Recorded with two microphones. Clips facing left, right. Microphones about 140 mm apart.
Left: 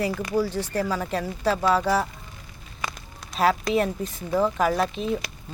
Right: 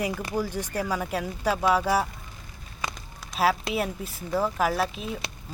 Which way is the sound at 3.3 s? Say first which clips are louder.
Left 3 dB; centre (ahead or behind).